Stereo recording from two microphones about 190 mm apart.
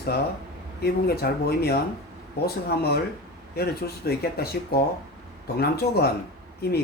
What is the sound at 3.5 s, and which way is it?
Speech, 55° left (ahead or behind).